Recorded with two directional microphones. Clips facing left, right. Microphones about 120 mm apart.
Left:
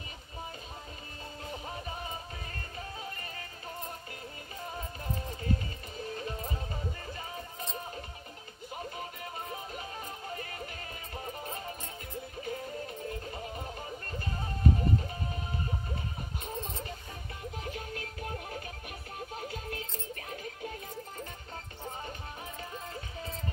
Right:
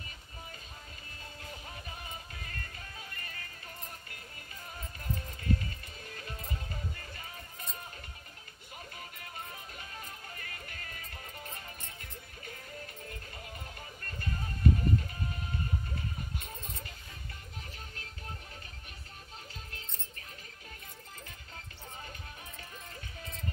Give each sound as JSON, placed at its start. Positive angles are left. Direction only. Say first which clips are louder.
{"t": 1.5, "sound": "music", "louder": "left 8 dB", "side_deg": 30}
{"t": 4.7, "sound": "music", "louder": "left 1 dB", "side_deg": 30}
{"t": 10.3, "sound": "music", "louder": "left 7 dB", "side_deg": 30}
{"t": 19.1, "sound": "music", "louder": "left 11 dB", "side_deg": 50}
{"t": 22.9, "sound": "music", "louder": "left 6 dB", "side_deg": 30}